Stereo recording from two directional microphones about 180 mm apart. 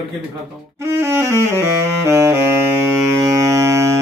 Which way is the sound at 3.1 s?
20° right (ahead or behind).